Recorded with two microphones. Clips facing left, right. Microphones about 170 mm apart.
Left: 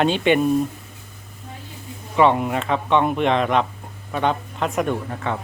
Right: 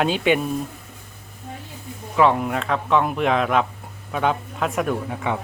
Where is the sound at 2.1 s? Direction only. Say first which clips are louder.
Left 1 dB; centre (ahead or behind).